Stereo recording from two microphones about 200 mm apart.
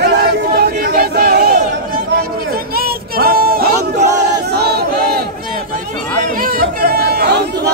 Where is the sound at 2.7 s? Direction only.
50° right (ahead or behind).